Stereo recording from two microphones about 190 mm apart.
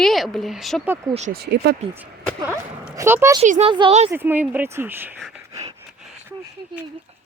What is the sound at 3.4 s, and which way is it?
Speech, 40° right (ahead or behind).